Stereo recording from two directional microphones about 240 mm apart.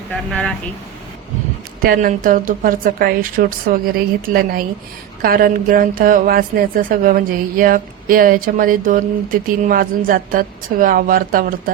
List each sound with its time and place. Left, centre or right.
0.3 s speech: centre
1.8 s speech: right